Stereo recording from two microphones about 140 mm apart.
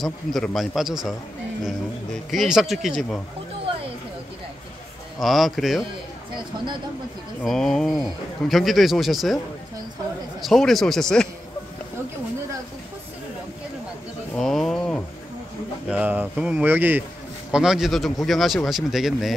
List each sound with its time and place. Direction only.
0.0 s speech: 5° left (ahead or behind)
2.3 s speech: centre (ahead or behind)
5.2 s speech: centre (ahead or behind)
6.3 s speech: 35° right (ahead or behind)
7.4 s speech: 5° left (ahead or behind)
10.4 s speech: centre (ahead or behind)
14.3 s a sound: centre (ahead or behind)
15.9 s speech: 10° right (ahead or behind)